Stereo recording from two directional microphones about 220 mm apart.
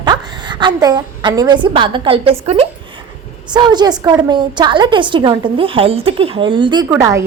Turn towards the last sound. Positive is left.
turn(degrees=-15)  # may be behind; listen again after turning